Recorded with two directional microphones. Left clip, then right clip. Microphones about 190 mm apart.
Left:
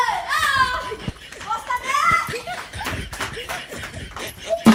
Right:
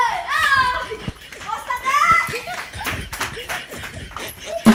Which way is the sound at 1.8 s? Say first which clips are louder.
Right 4 dB; centre (ahead or behind).